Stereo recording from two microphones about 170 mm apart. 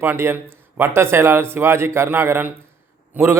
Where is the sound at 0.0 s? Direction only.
15° right (ahead or behind).